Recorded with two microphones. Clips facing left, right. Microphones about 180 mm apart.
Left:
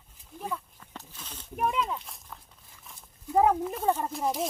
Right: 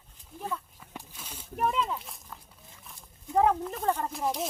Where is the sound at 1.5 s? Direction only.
Centre (ahead or behind).